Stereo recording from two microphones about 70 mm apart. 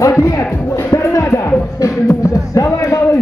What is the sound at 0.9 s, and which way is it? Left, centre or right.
Music, left.